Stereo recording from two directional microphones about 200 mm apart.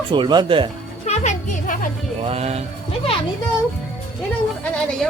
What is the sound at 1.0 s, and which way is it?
Music, 35° left (ahead or behind).